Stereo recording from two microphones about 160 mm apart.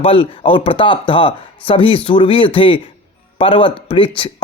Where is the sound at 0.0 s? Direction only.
35° left (ahead or behind).